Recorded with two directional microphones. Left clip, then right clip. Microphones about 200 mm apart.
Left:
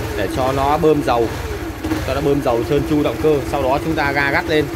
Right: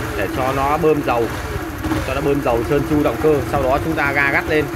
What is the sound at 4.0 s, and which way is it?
Speech, 15° left (ahead or behind).